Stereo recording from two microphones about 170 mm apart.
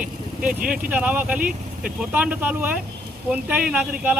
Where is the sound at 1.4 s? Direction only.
55° right (ahead or behind).